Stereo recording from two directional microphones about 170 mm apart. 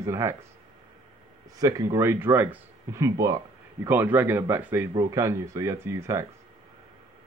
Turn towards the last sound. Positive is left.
turn(degrees=-15)  # may be behind; listen again after turning